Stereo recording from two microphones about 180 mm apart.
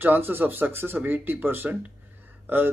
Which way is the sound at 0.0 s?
10° right (ahead or behind).